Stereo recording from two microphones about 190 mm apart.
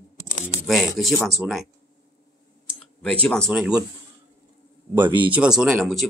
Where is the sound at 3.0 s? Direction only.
5° left (ahead or behind).